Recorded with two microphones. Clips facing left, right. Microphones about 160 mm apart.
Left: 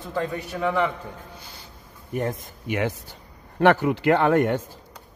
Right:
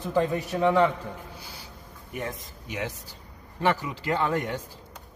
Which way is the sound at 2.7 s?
60° left (ahead or behind).